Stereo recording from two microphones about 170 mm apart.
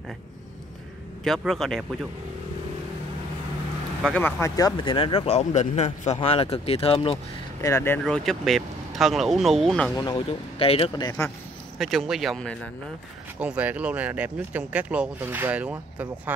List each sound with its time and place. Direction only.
1.2 s speech: centre (ahead or behind)
4.1 s speech: 15° left (ahead or behind); by 7.2 s 35° left (ahead or behind)
7.6 s speech: 15° left (ahead or behind)
8.0 s speech: centre (ahead or behind)
9.9 s speech: 25° left (ahead or behind)
11.8 s speech: centre (ahead or behind)
13.4 s speech: 10° right (ahead or behind)